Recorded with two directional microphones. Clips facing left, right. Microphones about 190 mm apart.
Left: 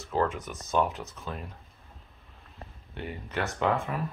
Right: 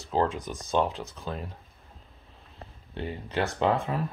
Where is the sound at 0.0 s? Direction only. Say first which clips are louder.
Right 2 dB; 30° right (ahead or behind).